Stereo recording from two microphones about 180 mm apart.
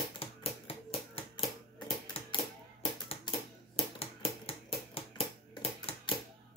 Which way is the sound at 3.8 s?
30° left (ahead or behind).